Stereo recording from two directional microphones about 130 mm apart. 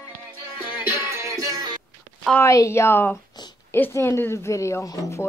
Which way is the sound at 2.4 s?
25° left (ahead or behind).